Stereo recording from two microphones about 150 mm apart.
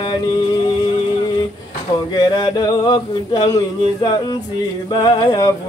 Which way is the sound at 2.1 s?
30° left (ahead or behind).